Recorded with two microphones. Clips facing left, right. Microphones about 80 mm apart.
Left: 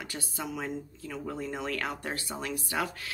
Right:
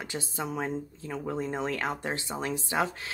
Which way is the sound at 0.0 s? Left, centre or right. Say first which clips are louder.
Right 3 dB; right.